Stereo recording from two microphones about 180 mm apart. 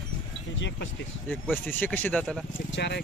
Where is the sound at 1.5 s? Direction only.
10° left (ahead or behind).